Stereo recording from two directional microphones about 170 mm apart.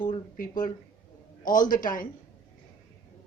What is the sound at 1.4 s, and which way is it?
Speech, 50° left (ahead or behind).